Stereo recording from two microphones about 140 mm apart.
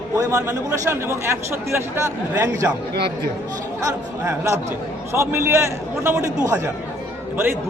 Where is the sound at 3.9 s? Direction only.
20° right (ahead or behind).